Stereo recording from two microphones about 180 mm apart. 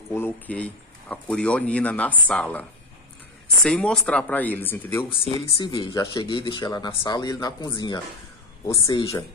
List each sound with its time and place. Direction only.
0.1 s speech: 10° left (ahead or behind)
3.6 s speech: 5° left (ahead or behind)
5.2 s speech: 30° left (ahead or behind)